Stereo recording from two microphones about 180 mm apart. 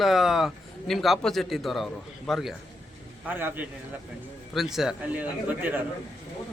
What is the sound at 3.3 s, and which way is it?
A man's voice, 10° right (ahead or behind).